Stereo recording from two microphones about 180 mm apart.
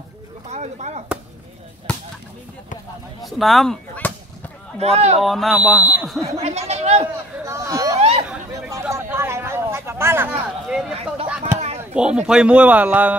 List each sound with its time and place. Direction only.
0.5 s speech: 40° right (ahead or behind)
3.3 s speech: centre (ahead or behind)
4.7 s speech: 35° right (ahead or behind)
5.2 s speech: centre (ahead or behind)
6.2 s speech: 35° right (ahead or behind)
6.7 s chatter: 35° right (ahead or behind)
7.4 s hubbub: 15° right (ahead or behind)
8.0 s chatter: 35° right (ahead or behind)
8.6 s a sound: 15° right (ahead or behind)
11.8 s speech: 5° right (ahead or behind)